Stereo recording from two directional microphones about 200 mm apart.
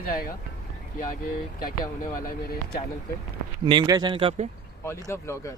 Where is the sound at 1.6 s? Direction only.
45° left (ahead or behind).